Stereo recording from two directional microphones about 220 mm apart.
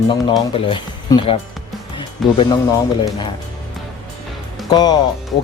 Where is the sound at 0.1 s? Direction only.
20° left (ahead or behind).